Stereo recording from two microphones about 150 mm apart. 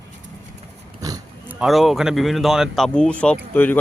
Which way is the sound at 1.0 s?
25° right (ahead or behind).